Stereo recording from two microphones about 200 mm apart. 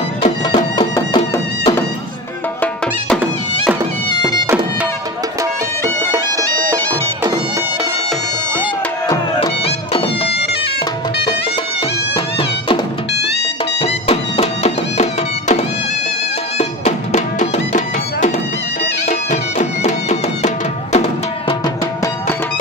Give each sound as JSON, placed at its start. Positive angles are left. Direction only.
{"t": 0.5, "sound": "music", "side_deg": 20}
{"t": 6.1, "sound": "bagpipes", "side_deg": -15}
{"t": 9.0, "sound": "music", "side_deg": 20}
{"t": 9.7, "sound": "music", "side_deg": 30}
{"t": 13.7, "sound": "music", "side_deg": 30}